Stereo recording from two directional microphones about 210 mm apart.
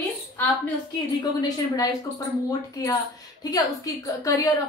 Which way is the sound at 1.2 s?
15° left (ahead or behind).